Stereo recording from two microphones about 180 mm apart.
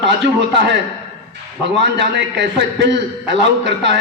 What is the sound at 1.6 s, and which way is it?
A man's voice, 75° right (ahead or behind).